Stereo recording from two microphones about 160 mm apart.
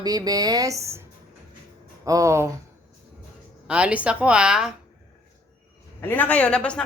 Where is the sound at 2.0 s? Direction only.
20° right (ahead or behind).